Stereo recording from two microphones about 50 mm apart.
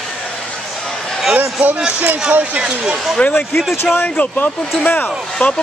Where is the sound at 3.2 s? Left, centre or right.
Left.